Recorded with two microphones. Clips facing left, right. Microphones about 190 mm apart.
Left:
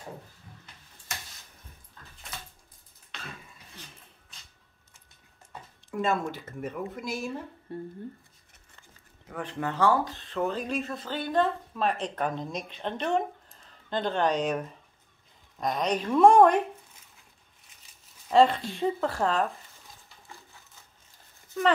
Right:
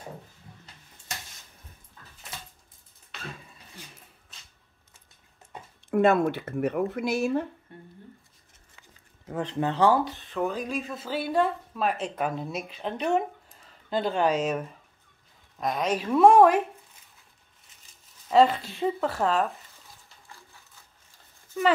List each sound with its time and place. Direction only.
3.1 s a sound: 5° right (ahead or behind)
5.9 s speech: 65° right (ahead or behind)
9.3 s speech: 25° right (ahead or behind)
10.3 s speech: 5° right (ahead or behind)
18.3 s speech: centre (ahead or behind)